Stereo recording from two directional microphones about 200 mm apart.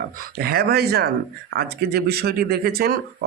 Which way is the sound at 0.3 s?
50° right (ahead or behind).